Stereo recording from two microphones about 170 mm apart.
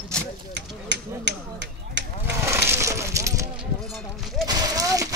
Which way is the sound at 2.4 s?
15° right (ahead or behind).